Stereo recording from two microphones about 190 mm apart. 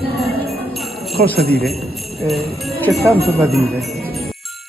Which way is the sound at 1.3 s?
55° right (ahead or behind).